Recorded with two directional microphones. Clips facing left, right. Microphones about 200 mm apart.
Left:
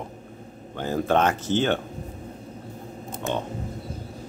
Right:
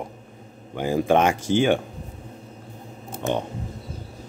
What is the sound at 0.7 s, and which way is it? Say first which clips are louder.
Speech: right 3 dB; 10° right (ahead or behind).